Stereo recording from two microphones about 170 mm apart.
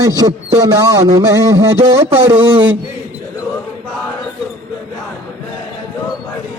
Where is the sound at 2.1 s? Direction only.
35° right (ahead or behind).